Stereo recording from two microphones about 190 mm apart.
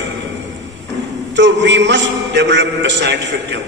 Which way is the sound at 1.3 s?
70° right (ahead or behind).